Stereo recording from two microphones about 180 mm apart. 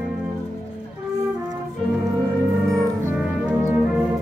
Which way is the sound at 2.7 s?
20° right (ahead or behind).